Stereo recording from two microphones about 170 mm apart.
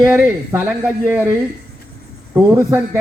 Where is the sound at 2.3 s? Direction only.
20° right (ahead or behind).